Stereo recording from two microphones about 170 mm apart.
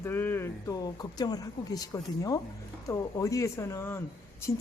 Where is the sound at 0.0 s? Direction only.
15° left (ahead or behind).